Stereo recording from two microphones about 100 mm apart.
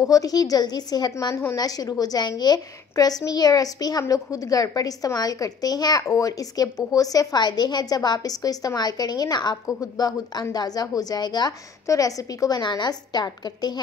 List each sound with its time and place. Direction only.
0.0 s a woman's voice: 35° left (ahead or behind)
1.3 s a woman's voice: 30° left (ahead or behind)